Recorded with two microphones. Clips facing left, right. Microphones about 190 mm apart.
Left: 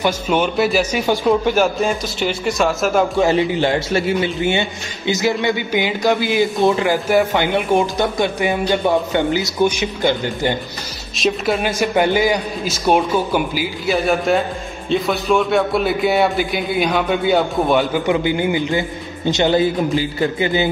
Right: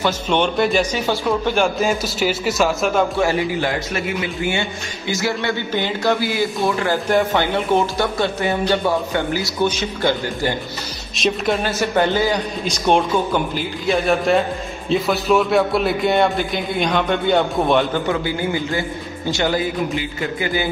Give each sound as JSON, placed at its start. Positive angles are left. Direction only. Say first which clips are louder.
{"t": 0.0, "sound": "a man's voice", "louder": "left 1 dB", "side_deg": 5}
{"t": 3.2, "sound": "a man's voice", "louder": "left 3 dB", "side_deg": 20}
{"t": 11.1, "sound": "a man's voice", "louder": "left 1 dB", "side_deg": 0}
{"t": 11.6, "sound": "a man's voice", "louder": "left 3 dB", "side_deg": 15}
{"t": 18.0, "sound": "a man's voice", "louder": "left 4 dB", "side_deg": 20}